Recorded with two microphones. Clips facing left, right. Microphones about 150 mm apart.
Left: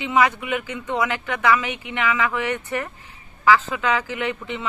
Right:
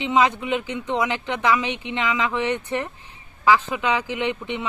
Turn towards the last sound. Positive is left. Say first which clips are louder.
# right 1 dB
turn(degrees=-20)  # may be behind; listen again after turning